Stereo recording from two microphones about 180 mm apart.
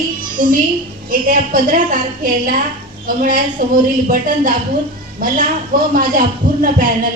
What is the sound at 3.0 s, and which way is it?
A woman's voice, 45° right (ahead or behind).